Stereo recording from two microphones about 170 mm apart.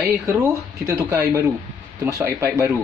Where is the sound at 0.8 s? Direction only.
15° right (ahead or behind).